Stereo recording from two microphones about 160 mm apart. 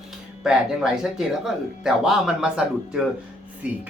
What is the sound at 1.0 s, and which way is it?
Speech, 5° right (ahead or behind).